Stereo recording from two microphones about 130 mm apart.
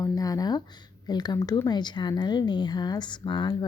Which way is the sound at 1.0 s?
30° left (ahead or behind).